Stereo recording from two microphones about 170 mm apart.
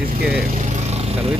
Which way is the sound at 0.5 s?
40° right (ahead or behind).